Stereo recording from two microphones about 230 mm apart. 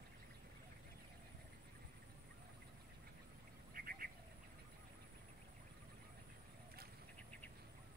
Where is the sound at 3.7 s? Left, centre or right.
Right.